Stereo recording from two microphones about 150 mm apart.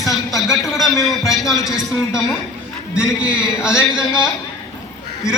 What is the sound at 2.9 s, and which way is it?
Speech, 5° right (ahead or behind).